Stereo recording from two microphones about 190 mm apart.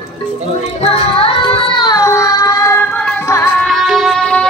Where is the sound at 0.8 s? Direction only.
30° left (ahead or behind); by 3.7 s 10° left (ahead or behind).